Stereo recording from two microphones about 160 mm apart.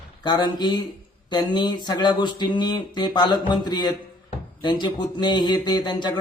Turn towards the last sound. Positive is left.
turn(degrees=25)  # may be behind; listen again after turning